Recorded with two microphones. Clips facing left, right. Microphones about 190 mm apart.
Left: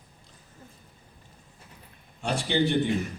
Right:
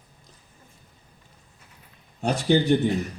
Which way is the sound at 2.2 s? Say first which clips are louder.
Right 4 dB; 45° right (ahead or behind).